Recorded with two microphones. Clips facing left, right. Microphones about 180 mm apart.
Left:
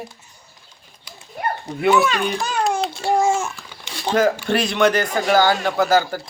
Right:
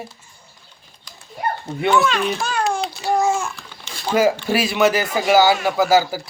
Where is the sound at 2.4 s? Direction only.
20° left (ahead or behind).